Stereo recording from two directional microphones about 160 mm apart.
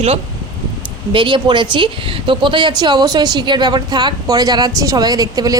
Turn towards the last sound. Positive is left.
turn(degrees=-25)  # may be behind; listen again after turning